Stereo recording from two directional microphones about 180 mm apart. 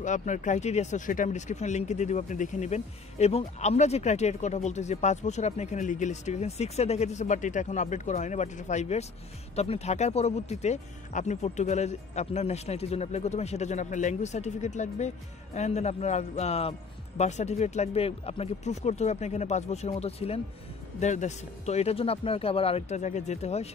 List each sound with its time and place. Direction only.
0.0 s speech: 45° left (ahead or behind)